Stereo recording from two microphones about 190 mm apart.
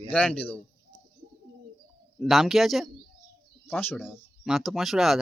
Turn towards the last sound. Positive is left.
turn(degrees=0)  # may be behind; listen again after turning